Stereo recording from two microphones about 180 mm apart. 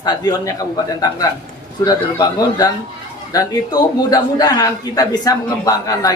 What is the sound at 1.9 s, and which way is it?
A man's voice, 20° left (ahead or behind).